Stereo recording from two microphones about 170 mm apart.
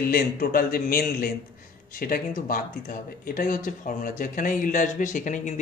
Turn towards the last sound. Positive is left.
turn(degrees=50)  # may be behind; listen again after turning